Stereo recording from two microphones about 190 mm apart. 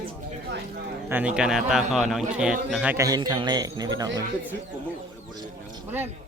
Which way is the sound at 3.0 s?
20° right (ahead or behind).